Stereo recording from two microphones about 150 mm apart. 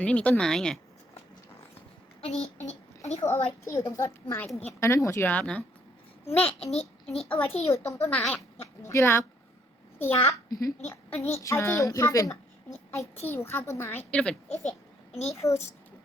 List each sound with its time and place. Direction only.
0.0 s a child's voice: 10° left (ahead or behind)
2.2 s a child's voice: 45° left (ahead or behind)
3.2 s a child's voice: 15° left (ahead or behind)
4.4 s speech: centre (ahead or behind)
4.8 s a child's voice: 20° left (ahead or behind)
6.2 s a child's voice: 40° left (ahead or behind)
7.3 s a child's voice: 10° left (ahead or behind)
8.2 s speech: centre (ahead or behind)
8.9 s a child's voice: 15° left (ahead or behind)
14.6 s a child's voice: 45° left (ahead or behind)
15.4 s speech: 20° left (ahead or behind)